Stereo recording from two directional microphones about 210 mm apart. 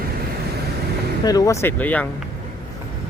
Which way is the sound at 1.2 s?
15° left (ahead or behind).